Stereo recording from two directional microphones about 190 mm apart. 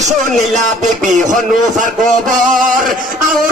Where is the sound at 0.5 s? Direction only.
40° right (ahead or behind).